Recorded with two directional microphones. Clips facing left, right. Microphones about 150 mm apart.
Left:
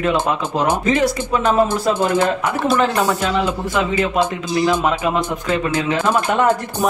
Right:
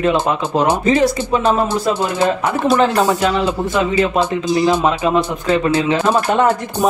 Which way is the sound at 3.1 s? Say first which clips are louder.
Right 3 dB; 10° right (ahead or behind).